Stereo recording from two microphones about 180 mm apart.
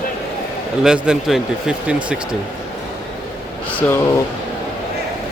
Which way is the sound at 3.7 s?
10° left (ahead or behind).